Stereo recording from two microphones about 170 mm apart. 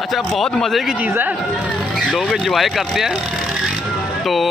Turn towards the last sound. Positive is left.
turn(degrees=0)  # may be behind; listen again after turning